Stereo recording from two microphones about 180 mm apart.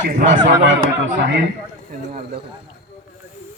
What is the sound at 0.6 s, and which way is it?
Speech, 90° right.